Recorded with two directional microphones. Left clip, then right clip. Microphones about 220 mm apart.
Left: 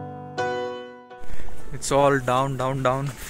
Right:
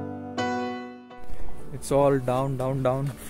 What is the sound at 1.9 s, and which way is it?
Speech, 5° right (ahead or behind).